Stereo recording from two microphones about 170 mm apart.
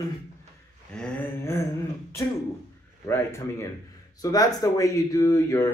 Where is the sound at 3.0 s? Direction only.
15° left (ahead or behind).